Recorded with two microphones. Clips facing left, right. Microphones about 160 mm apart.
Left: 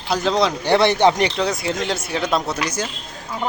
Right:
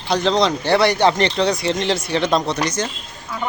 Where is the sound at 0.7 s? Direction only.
20° left (ahead or behind).